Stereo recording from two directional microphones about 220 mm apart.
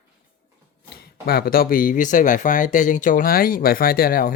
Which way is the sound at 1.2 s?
45° left (ahead or behind).